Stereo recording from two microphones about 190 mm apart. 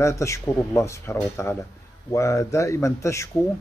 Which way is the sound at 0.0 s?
15° left (ahead or behind).